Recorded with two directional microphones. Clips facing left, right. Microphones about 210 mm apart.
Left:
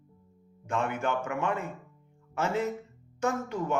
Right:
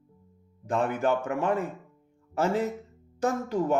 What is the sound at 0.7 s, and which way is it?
A man's voice, 35° right (ahead or behind).